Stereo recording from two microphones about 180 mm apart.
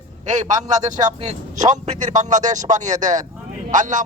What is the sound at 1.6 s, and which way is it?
Speech, 45° right (ahead or behind).